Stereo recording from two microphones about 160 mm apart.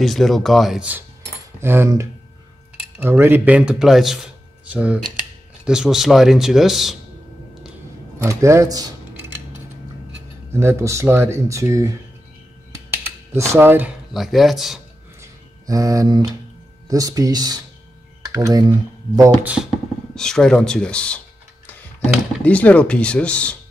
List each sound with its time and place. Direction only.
0.0 s speech: centre (ahead or behind)
8.2 s cutlery: 20° right (ahead or behind)
10.5 s speech: 15° right (ahead or behind)
12.9 s a sound: 15° right (ahead or behind)
14.1 s speech: centre (ahead or behind)
15.6 s speech: 20° right (ahead or behind)
19.4 s speech: 5° right (ahead or behind)
22.4 s speech: 10° left (ahead or behind)